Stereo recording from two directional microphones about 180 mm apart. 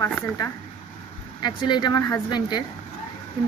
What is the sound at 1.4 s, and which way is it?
Speech, 25° left (ahead or behind).